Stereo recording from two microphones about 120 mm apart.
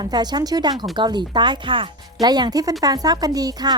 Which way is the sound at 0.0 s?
35° right (ahead or behind).